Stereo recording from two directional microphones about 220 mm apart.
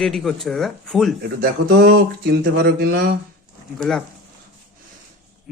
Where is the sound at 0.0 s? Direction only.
Centre (ahead or behind).